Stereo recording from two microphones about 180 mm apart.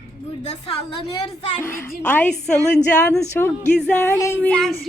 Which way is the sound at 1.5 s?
10° left (ahead or behind).